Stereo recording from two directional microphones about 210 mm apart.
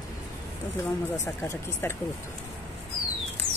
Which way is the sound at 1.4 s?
15° left (ahead or behind).